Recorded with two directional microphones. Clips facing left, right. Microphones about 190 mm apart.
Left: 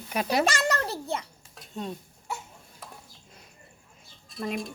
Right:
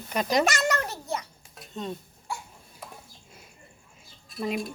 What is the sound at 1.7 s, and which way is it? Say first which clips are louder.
Speech: right 1 dB; 10° left (ahead or behind).